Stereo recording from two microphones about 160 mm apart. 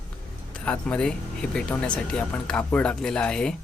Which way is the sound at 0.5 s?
10° left (ahead or behind).